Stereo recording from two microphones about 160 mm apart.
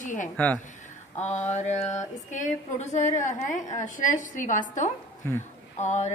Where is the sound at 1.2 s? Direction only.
45° left (ahead or behind).